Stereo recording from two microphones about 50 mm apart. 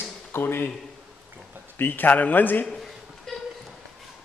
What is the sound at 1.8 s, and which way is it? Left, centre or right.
Speech, left.